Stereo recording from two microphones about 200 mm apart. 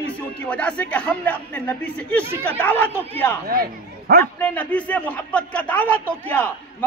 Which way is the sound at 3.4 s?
50° right (ahead or behind).